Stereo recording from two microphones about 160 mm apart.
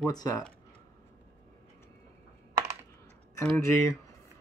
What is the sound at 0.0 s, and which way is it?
Speech, 20° left (ahead or behind).